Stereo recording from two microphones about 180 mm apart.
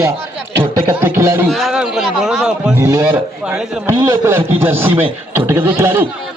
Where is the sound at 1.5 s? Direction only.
Centre (ahead or behind).